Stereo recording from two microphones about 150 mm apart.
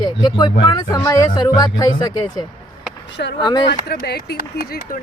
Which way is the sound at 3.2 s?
90° left.